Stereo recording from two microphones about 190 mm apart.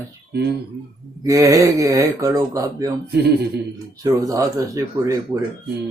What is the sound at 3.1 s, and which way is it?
Speech, 60° right (ahead or behind).